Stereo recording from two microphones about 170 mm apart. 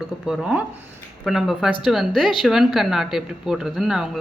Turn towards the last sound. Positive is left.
turn(degrees=0)  # may be behind; listen again after turning